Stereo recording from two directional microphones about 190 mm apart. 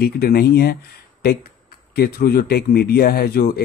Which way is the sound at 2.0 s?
55° left (ahead or behind).